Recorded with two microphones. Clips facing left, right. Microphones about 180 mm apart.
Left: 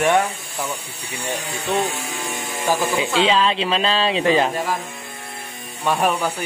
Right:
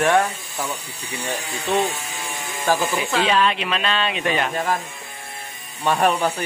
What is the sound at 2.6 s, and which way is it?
Speech, 15° left (ahead or behind).